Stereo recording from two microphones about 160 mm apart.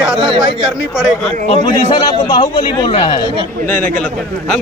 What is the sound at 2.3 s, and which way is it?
Speech, 30° left (ahead or behind).